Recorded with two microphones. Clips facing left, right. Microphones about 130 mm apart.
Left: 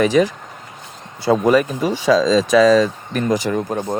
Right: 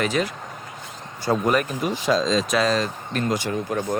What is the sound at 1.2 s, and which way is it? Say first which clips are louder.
Speech: left 6 dB; 75° left (ahead or behind).